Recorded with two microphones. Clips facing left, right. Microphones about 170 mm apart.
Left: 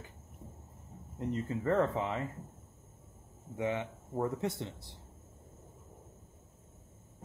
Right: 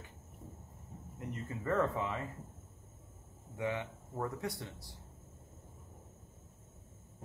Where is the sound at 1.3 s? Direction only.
20° left (ahead or behind).